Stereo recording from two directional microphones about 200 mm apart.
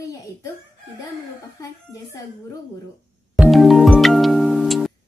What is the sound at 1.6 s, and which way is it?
Speech, 15° left (ahead or behind).